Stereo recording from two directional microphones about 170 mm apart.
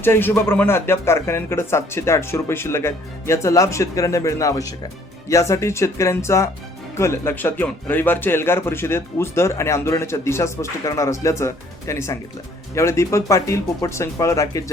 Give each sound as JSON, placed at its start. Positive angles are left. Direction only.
{"t": 0.0, "sound": "speech", "side_deg": 10}